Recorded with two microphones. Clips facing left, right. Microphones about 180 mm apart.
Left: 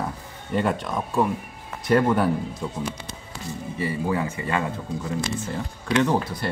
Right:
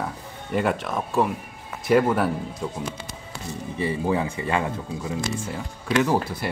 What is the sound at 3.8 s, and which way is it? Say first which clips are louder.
Speech: right 2 dB; 15° right (ahead or behind).